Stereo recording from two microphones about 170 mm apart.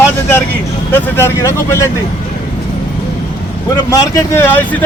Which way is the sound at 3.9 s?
15° left (ahead or behind).